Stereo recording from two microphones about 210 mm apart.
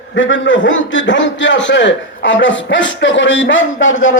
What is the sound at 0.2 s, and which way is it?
A man's voice, 65° left (ahead or behind).